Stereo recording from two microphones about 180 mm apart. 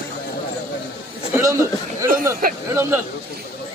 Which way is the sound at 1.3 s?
15° right (ahead or behind).